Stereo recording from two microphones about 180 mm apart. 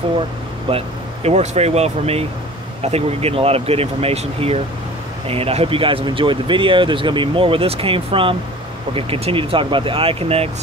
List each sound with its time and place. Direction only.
0.7 s speech: 35° right (ahead or behind)